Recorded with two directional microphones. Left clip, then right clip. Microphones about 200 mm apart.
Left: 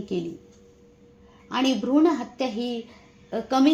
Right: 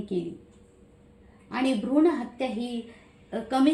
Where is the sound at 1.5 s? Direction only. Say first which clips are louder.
Left 4 dB; 30° left (ahead or behind).